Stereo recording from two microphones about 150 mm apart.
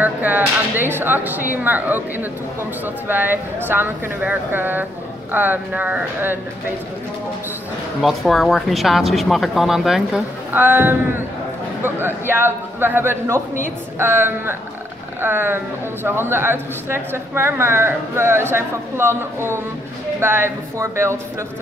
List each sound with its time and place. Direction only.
0.0 s a man's voice: 10° right (ahead or behind)
8.0 s speech: centre (ahead or behind)
10.5 s a man's voice: 15° right (ahead or behind)